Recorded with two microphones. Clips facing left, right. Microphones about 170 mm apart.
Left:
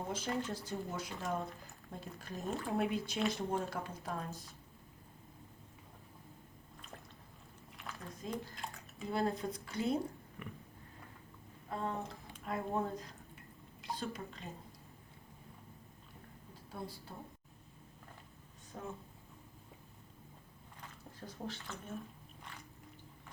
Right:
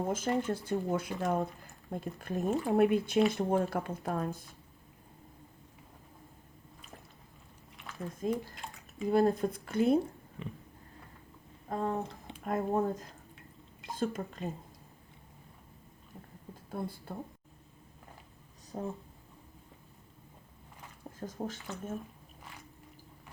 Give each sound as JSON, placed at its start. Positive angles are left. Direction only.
{"t": 0.1, "sound": "speech", "side_deg": -50}
{"t": 8.2, "sound": "speech", "side_deg": -55}
{"t": 8.5, "sound": "bathtub", "side_deg": 0}
{"t": 9.1, "sound": "speech", "side_deg": -50}
{"t": 10.4, "sound": "a sound", "side_deg": -20}
{"t": 11.7, "sound": "speech", "side_deg": -45}
{"t": 16.7, "sound": "speech", "side_deg": -55}
{"t": 18.7, "sound": "speech", "side_deg": -35}
{"t": 21.2, "sound": "speech", "side_deg": -45}